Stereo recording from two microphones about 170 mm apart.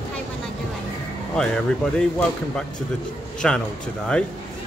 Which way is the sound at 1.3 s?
5° left (ahead or behind).